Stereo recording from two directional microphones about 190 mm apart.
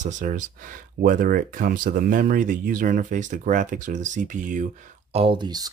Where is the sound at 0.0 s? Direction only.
40° right (ahead or behind).